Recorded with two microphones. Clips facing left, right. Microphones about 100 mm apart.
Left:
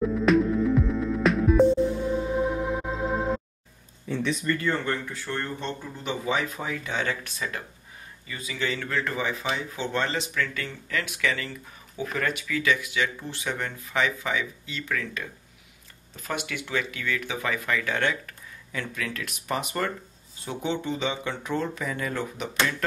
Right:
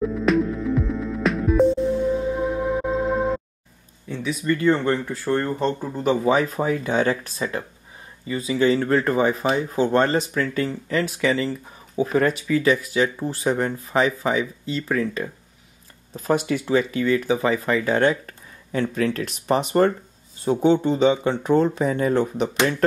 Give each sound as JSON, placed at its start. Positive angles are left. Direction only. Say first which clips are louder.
{"t": 0.0, "sound": "music", "louder": "right 1 dB", "side_deg": 0}
{"t": 4.1, "sound": "speech", "louder": "even", "side_deg": -5}
{"t": 4.5, "sound": "speech", "louder": "right 10 dB", "side_deg": -20}